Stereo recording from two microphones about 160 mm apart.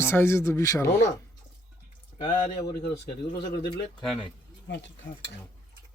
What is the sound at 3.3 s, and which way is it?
Speech, 80° left.